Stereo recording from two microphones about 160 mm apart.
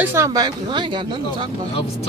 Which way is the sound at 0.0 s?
15° right (ahead or behind).